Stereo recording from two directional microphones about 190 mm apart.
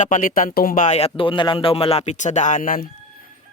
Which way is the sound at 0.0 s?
45° left (ahead or behind).